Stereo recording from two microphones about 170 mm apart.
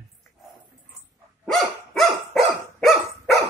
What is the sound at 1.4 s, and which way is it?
Dog, 5° left (ahead or behind).